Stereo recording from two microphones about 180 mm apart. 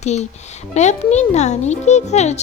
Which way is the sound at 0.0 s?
40° left (ahead or behind).